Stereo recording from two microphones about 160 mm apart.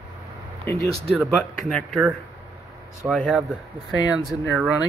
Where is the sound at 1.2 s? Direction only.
Centre (ahead or behind).